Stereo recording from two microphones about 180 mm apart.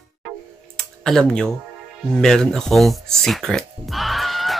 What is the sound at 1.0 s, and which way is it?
Speech, 5° left (ahead or behind).